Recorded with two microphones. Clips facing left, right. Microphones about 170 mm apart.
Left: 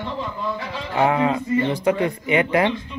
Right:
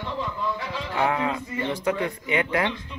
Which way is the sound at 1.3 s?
25° left (ahead or behind).